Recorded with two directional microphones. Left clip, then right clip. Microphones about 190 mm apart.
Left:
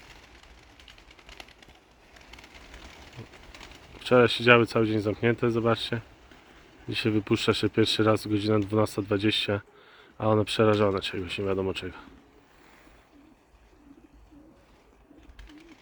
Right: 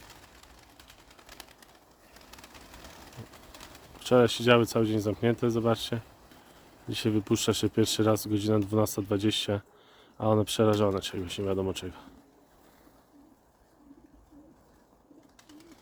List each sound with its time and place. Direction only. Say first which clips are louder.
4.0 s speech: left 3 dB; 15° right (ahead or behind)